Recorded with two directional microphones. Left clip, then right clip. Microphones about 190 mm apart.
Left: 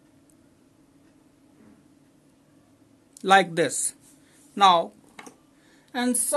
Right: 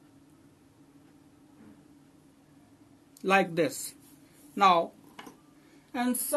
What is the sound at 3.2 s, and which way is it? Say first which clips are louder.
Speech: left 6 dB; 40° left (ahead or behind).